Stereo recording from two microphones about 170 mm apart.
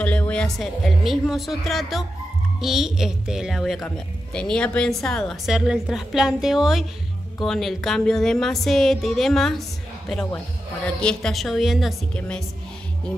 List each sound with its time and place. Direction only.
0.0 s a woman's voice: 5° left (ahead or behind)